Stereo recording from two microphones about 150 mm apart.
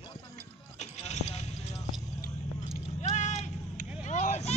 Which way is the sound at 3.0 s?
50° left (ahead or behind).